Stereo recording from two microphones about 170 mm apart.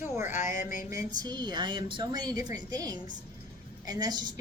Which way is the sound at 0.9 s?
20° right (ahead or behind).